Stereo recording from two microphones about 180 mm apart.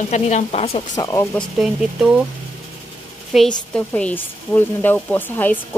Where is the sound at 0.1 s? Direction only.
40° left (ahead or behind).